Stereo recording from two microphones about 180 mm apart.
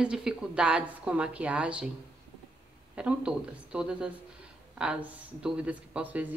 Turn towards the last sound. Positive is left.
turn(degrees=-10)  # may be behind; listen again after turning